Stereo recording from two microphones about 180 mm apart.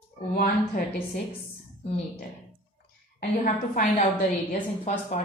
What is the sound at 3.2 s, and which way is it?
Speech, 50° left (ahead or behind).